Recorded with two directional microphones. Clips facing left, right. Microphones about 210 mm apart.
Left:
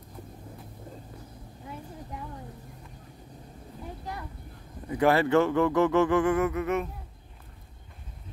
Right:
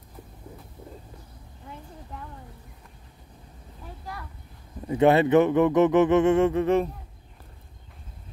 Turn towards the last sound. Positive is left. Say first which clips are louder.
# right 6 dB
turn(degrees=-30)  # may be behind; listen again after turning